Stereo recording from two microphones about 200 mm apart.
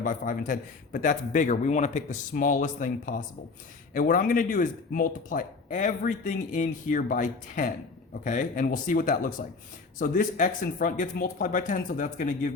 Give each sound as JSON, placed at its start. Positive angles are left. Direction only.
{"t": 0.0, "sound": "speech", "side_deg": 40}